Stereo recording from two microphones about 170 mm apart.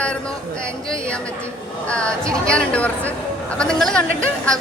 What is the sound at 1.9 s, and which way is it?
A man's voice, 5° left (ahead or behind).